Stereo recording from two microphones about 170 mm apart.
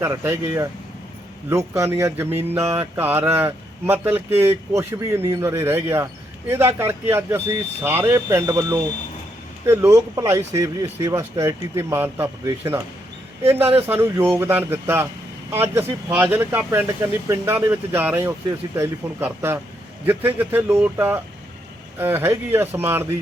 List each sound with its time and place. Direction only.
0.0 s speech: 15° right (ahead or behind)